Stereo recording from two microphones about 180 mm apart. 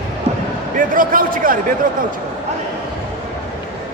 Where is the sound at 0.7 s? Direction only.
50° right (ahead or behind).